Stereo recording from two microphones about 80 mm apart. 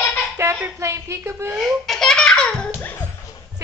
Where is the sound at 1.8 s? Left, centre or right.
Centre.